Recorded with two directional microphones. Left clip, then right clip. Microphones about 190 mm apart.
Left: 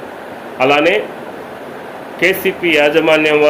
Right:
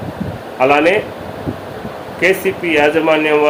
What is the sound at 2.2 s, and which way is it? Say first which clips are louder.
A man's voice: left 1 dB; 15° left (ahead or behind).